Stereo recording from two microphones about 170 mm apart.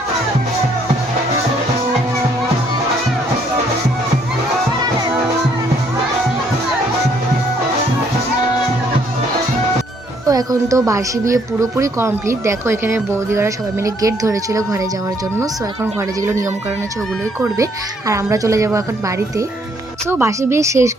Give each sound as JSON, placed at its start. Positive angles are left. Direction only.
{"t": 10.2, "sound": "speech", "side_deg": -20}
{"t": 18.1, "sound": "speech", "side_deg": -20}